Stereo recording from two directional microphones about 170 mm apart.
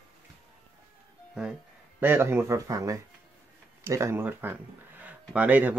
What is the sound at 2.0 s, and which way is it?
Speech, 15° right (ahead or behind).